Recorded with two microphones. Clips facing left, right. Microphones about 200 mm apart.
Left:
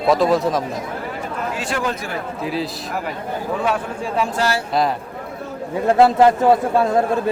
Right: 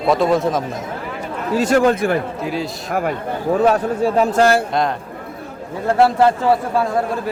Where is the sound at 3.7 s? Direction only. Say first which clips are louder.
Right 6 dB; 40° right (ahead or behind).